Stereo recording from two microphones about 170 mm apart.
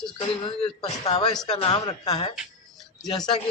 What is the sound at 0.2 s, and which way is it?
A man's voice, 35° left (ahead or behind).